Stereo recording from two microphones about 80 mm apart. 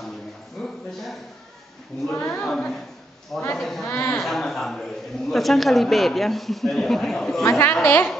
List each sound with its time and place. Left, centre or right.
0.6 s a sound: centre
2.2 s a woman's voice: centre
7.4 s a woman's voice: left